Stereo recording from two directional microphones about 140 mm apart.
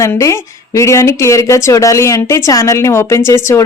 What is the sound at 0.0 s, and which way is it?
Speech, 20° left (ahead or behind).